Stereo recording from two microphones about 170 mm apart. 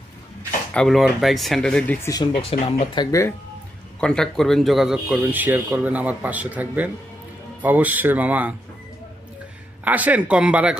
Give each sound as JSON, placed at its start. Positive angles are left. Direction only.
{"t": 0.7, "sound": "speech", "side_deg": 0}
{"t": 2.0, "sound": "speech", "side_deg": 25}
{"t": 2.5, "sound": "speech", "side_deg": 35}
{"t": 4.0, "sound": "a man's voice", "side_deg": 5}
{"t": 9.8, "sound": "a man's voice", "side_deg": -10}